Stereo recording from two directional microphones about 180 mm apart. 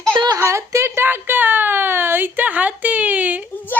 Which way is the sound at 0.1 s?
25° right (ahead or behind).